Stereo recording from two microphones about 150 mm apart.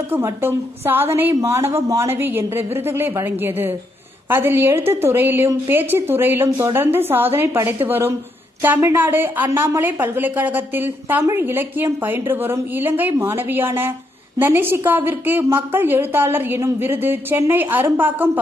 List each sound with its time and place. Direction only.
0.1 s speech: 15° right (ahead or behind)